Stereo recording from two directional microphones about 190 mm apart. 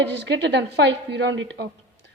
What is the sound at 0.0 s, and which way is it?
A woman's voice, 65° right (ahead or behind).